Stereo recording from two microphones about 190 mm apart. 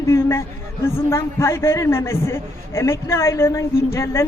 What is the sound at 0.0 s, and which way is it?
A man's voice, 15° left (ahead or behind).